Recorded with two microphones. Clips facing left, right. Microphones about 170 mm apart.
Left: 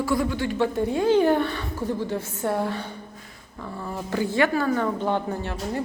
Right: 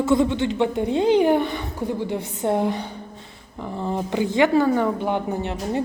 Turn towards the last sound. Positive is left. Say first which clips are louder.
# right 4 dB
turn(degrees=-20)  # may be behind; listen again after turning